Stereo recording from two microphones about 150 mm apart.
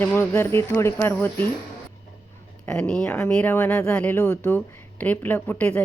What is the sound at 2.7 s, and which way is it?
Speech, 5° left (ahead or behind).